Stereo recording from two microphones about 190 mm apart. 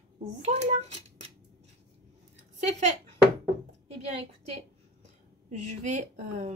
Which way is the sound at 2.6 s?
35° right (ahead or behind).